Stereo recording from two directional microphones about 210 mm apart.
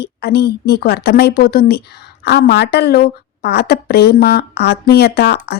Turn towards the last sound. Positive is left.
turn(degrees=50)  # may be behind; listen again after turning